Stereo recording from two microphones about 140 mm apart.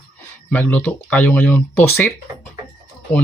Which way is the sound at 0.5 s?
15° left (ahead or behind).